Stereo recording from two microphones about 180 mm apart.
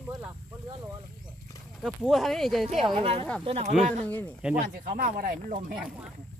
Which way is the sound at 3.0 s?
30° right (ahead or behind).